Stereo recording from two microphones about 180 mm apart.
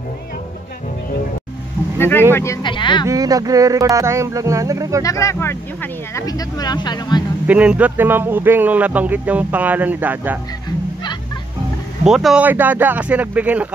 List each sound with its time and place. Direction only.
2.0 s vehicle: 10° left (ahead or behind)
2.3 s speech: 15° left (ahead or behind)
2.6 s speech: 25° left (ahead or behind)
3.1 s speech: 20° right (ahead or behind)
5.0 s speech: 15° left (ahead or behind)
7.4 s speech: 5° right (ahead or behind)
12.0 s speech: centre (ahead or behind)